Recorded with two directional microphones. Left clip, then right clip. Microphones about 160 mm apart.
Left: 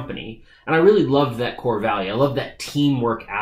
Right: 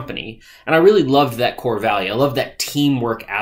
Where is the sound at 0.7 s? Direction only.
15° right (ahead or behind).